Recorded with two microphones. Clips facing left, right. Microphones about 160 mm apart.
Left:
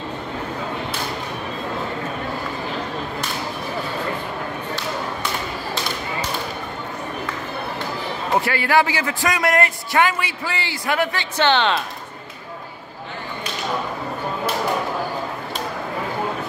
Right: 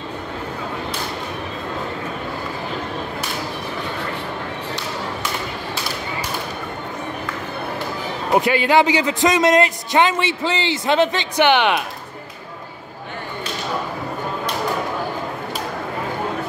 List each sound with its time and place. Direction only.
8.4 s a man's voice: 20° right (ahead or behind)